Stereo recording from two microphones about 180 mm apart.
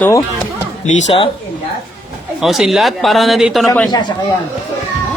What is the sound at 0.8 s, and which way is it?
Speech, 40° left (ahead or behind).